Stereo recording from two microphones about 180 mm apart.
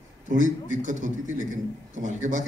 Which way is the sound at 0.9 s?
45° right (ahead or behind).